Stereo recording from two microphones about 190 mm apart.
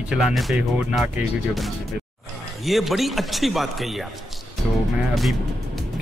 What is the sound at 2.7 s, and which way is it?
Speech, centre (ahead or behind).